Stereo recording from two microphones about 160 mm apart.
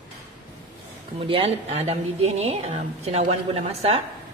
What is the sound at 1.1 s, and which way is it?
A woman's voice, 35° right (ahead or behind).